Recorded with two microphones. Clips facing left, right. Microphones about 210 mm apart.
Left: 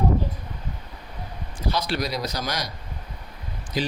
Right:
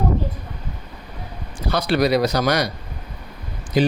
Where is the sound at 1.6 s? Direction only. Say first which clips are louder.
Right 7 dB; 65° right (ahead or behind).